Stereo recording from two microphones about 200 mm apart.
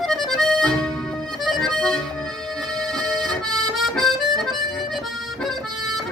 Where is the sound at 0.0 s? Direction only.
Centre (ahead or behind).